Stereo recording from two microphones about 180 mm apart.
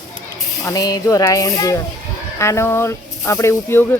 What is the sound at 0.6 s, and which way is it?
Speech, 20° left (ahead or behind).